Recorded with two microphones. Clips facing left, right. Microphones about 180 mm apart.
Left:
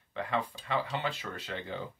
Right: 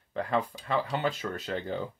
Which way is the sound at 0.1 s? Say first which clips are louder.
Right 4 dB; 40° right (ahead or behind).